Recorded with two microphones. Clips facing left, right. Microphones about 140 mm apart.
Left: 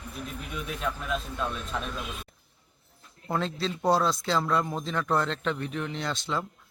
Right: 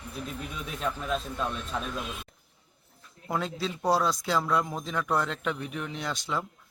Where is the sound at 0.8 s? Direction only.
Centre (ahead or behind).